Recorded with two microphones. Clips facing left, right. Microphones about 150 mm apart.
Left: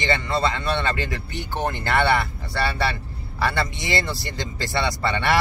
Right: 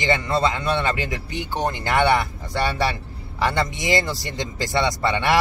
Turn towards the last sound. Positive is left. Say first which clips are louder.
# right 2 dB
turn(degrees=-20)  # may be behind; listen again after turning